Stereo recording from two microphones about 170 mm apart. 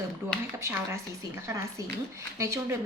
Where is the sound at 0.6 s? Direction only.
15° right (ahead or behind).